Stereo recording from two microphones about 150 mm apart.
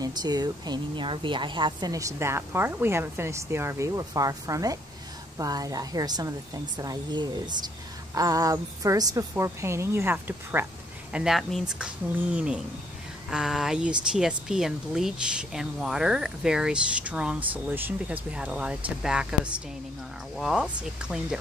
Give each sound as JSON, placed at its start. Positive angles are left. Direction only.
{"t": 0.0, "sound": "a woman's voice", "side_deg": -25}